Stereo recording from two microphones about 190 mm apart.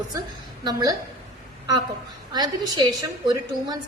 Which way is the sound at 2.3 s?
20° right (ahead or behind).